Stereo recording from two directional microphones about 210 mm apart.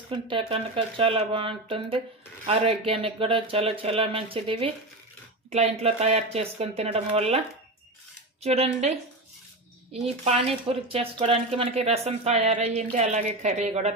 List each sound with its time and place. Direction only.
0.1 s speech: 25° right (ahead or behind)
10.2 s speech: 30° right (ahead or behind)